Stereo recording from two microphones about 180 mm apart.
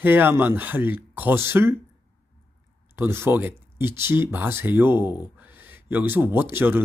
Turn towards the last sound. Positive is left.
turn(degrees=-10)  # may be behind; listen again after turning